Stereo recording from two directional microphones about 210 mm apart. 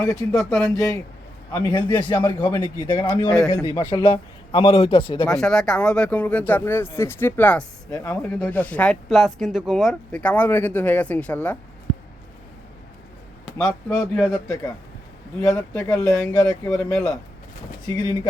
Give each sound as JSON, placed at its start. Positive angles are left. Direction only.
{"t": 0.0, "sound": "speech", "side_deg": 5}
{"t": 1.5, "sound": "a man's voice", "side_deg": 20}
{"t": 3.2, "sound": "speech", "side_deg": 5}
{"t": 3.7, "sound": "a man's voice", "side_deg": 20}
{"t": 5.3, "sound": "speech", "side_deg": 5}
{"t": 13.8, "sound": "speech", "side_deg": 10}
{"t": 16.6, "sound": "speech", "side_deg": 5}